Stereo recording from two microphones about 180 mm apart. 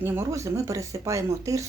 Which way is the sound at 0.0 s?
15° right (ahead or behind).